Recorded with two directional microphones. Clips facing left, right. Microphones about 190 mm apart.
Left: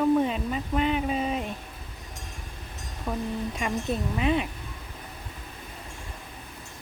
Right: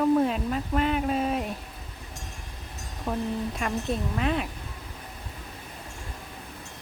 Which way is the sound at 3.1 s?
Centre (ahead or behind).